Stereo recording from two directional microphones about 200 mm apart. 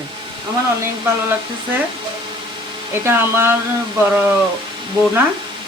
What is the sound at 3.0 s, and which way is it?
Speech, 10° right (ahead or behind).